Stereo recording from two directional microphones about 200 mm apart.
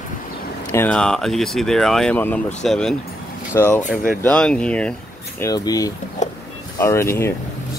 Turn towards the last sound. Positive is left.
turn(degrees=10)  # may be behind; listen again after turning